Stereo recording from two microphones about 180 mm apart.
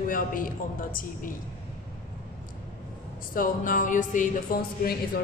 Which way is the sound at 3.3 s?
50° left (ahead or behind).